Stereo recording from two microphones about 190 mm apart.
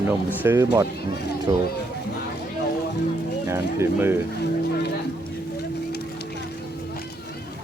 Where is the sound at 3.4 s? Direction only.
15° right (ahead or behind).